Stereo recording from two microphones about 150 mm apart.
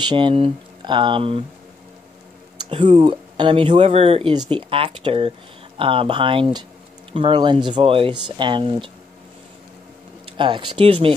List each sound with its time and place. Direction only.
0.0 s speech: 30° right (ahead or behind)
2.6 s speech: 35° right (ahead or behind)
3.7 s speech: 45° right (ahead or behind)
10.2 s speech: 35° right (ahead or behind)